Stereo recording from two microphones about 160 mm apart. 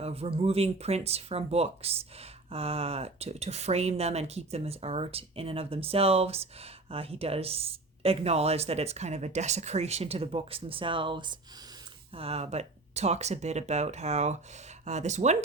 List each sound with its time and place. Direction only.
0.0 s speech: 40° right (ahead or behind)